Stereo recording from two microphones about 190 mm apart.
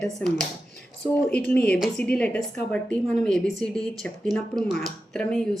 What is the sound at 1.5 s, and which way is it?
Speech, 5° left (ahead or behind).